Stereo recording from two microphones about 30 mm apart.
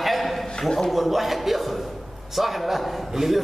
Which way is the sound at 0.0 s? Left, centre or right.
Centre.